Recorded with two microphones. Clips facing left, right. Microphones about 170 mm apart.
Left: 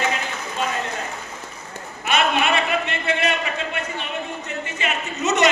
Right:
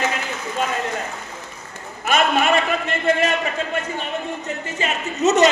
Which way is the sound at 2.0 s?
45° right (ahead or behind).